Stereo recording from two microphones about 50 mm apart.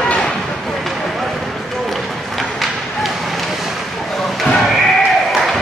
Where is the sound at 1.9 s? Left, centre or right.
Centre.